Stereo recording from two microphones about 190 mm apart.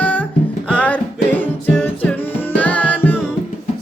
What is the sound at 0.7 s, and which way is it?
Music, 5° left (ahead or behind).